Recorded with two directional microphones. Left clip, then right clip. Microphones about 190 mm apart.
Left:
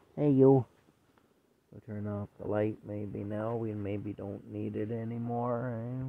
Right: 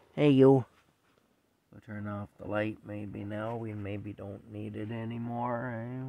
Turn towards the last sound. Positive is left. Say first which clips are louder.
# even
turn(degrees=0)  # may be behind; listen again after turning